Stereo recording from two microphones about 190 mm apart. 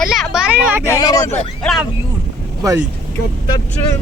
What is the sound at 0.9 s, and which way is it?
Speech, 20° left (ahead or behind).